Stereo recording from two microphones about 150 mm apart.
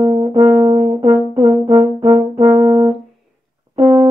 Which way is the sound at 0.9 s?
30° right (ahead or behind).